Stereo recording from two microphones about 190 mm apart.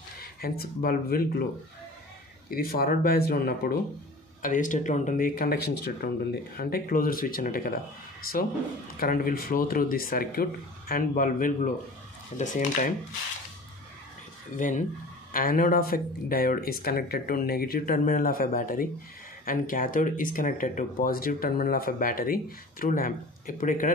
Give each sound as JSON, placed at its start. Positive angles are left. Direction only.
{"t": 0.2, "sound": "speech", "side_deg": 50}
{"t": 2.5, "sound": "speech", "side_deg": 50}
{"t": 14.6, "sound": "speech", "side_deg": 40}